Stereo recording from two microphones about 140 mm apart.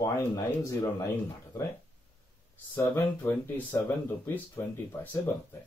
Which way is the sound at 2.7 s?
15° left (ahead or behind).